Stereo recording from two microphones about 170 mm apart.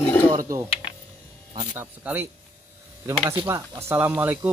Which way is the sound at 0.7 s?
35° left (ahead or behind).